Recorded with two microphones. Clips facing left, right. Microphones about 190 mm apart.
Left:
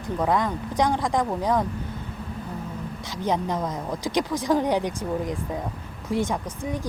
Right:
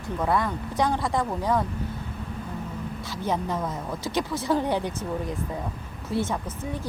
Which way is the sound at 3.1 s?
20° left (ahead or behind).